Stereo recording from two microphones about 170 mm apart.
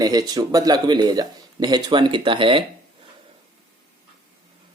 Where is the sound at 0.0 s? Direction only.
20° right (ahead or behind).